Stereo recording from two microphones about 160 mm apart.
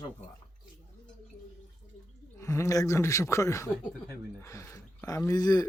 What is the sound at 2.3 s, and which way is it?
Speech, 15° left (ahead or behind).